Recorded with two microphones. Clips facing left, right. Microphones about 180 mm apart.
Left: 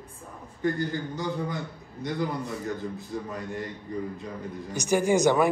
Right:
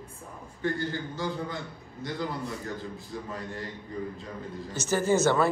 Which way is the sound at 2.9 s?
20° left (ahead or behind).